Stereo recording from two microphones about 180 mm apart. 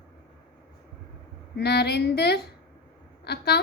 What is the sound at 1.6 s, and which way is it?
A woman's voice, 65° left (ahead or behind).